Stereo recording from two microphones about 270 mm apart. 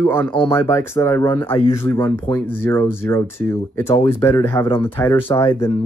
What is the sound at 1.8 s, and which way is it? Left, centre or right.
Speech, centre.